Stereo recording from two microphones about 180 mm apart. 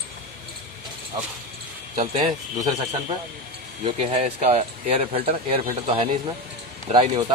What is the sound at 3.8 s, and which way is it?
Speech, 35° right (ahead or behind).